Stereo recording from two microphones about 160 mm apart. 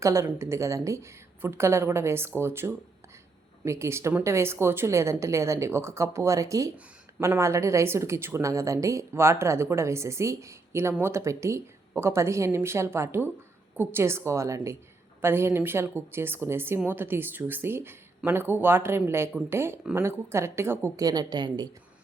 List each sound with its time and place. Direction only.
0.0 s a woman's voice: 20° right (ahead or behind)